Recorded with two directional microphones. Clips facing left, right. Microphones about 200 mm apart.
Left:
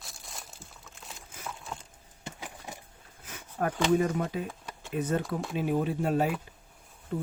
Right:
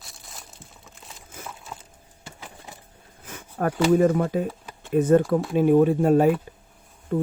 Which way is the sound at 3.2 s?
50° right (ahead or behind).